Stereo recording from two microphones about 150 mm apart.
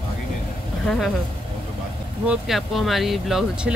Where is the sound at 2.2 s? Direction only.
Centre (ahead or behind).